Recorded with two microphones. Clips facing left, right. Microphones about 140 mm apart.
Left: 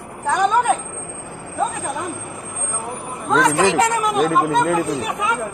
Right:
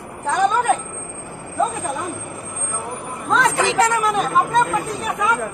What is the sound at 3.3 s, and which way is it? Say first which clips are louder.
Speech: left 3 dB; 15° left (ahead or behind).